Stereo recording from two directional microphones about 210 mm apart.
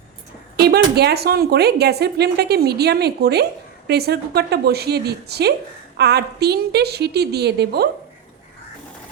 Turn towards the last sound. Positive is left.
turn(degrees=-50)  # may be behind; listen again after turning